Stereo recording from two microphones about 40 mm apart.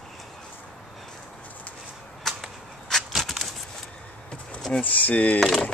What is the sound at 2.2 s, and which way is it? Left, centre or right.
Whip, centre.